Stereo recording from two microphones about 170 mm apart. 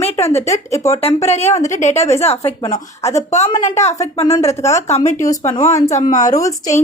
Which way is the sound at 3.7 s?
40° left (ahead or behind).